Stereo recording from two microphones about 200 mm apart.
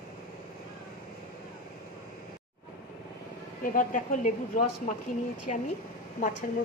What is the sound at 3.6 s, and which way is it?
Speech, 45° left (ahead or behind).